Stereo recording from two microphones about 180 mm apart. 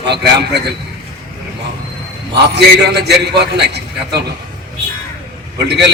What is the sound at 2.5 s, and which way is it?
A man's voice, 65° right (ahead or behind).